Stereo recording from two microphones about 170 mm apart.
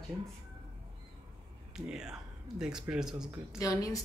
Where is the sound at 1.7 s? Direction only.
5° right (ahead or behind).